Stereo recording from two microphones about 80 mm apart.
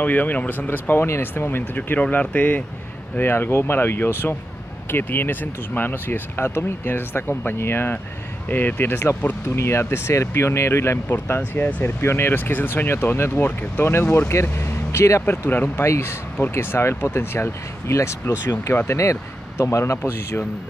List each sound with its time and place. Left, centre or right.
0.0 s speech: left